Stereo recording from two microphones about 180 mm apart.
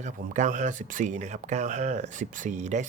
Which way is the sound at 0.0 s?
45° right (ahead or behind).